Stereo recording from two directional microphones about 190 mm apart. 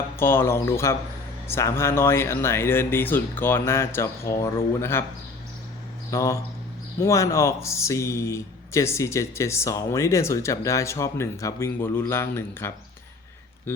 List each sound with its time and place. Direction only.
0.2 s speech: 15° left (ahead or behind)
6.1 s speech: 15° left (ahead or behind)